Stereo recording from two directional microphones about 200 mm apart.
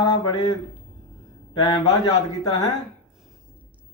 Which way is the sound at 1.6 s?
25° left (ahead or behind).